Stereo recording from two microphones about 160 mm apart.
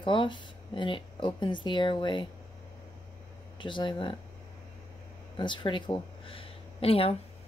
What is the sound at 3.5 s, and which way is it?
Speech, 30° left (ahead or behind).